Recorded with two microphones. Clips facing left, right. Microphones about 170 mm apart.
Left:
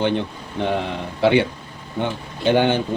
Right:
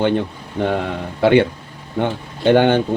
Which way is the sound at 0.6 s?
45° right (ahead or behind).